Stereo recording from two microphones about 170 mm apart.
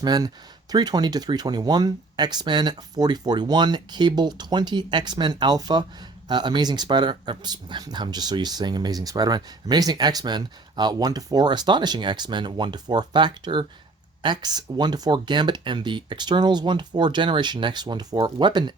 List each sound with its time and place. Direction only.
0.0 s speech: 25° right (ahead or behind)